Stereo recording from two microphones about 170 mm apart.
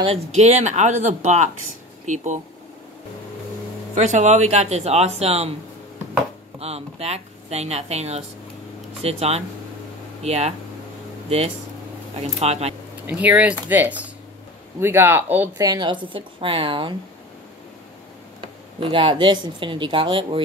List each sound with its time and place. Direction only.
0.0 s speech: 40° right (ahead or behind)
3.9 s speech: 45° right (ahead or behind)
6.6 s speech: 35° right (ahead or behind)
13.2 s speech: 10° right (ahead or behind)
15.5 s a woman's voice: 20° right (ahead or behind)
18.4 s speech: 30° right (ahead or behind)